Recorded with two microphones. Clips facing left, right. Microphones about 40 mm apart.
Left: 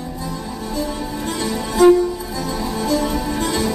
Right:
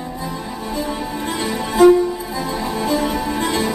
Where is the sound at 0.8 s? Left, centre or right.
Centre.